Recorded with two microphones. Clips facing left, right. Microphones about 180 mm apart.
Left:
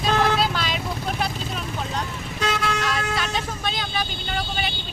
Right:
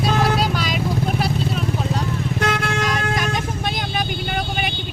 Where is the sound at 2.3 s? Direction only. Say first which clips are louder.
Right 1 dB; 55° right (ahead or behind).